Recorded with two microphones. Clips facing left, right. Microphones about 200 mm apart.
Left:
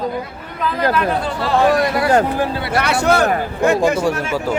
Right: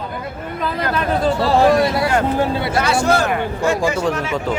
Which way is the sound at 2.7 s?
65° left (ahead or behind).